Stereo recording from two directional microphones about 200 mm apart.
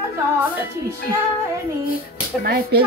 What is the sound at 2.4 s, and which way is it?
Speech, 50° right (ahead or behind).